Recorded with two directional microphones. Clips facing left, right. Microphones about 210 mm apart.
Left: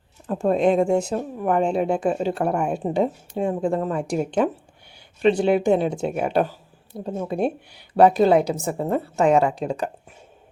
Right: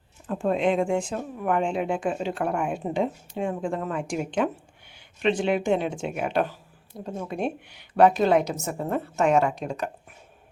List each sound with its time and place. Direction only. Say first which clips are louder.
0.3 s speech: left 4 dB; 40° left (ahead or behind)